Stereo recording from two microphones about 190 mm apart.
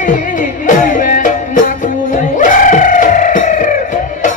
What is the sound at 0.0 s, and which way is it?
Music, 40° left (ahead or behind).